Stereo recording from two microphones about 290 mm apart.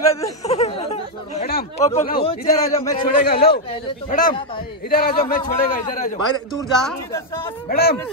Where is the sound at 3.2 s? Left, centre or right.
Left.